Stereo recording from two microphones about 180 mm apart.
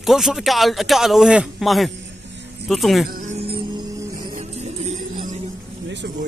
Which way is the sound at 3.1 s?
45° right (ahead or behind).